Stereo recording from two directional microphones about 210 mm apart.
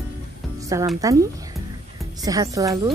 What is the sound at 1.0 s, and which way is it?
A woman's voice, 15° right (ahead or behind).